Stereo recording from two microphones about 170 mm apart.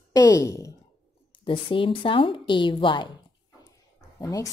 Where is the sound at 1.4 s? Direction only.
30° left (ahead or behind).